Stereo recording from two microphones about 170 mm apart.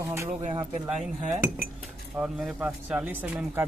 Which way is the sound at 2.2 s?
5° right (ahead or behind).